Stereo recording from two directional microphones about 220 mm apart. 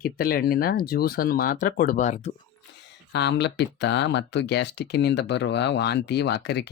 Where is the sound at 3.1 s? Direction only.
50° left (ahead or behind).